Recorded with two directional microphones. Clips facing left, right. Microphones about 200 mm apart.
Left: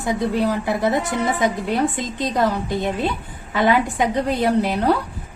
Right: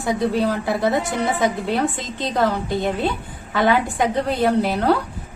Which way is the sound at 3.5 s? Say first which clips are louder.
Even; 15° left (ahead or behind).